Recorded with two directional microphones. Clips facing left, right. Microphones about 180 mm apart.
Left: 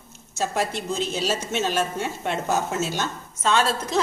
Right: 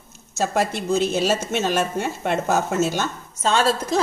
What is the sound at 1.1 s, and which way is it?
Speech, 50° right (ahead or behind).